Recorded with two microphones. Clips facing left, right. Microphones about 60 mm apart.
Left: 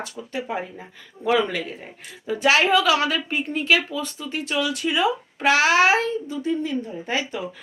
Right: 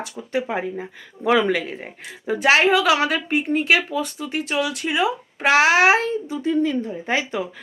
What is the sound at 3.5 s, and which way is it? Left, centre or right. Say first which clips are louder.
Speech: right 1 dB; right.